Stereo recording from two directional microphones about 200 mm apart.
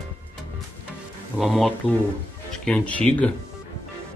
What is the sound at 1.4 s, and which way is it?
Speech, centre (ahead or behind).